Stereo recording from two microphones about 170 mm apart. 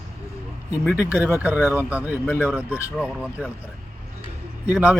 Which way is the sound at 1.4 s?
10° right (ahead or behind).